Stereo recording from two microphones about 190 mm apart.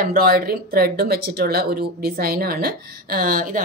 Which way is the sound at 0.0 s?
50° right (ahead or behind).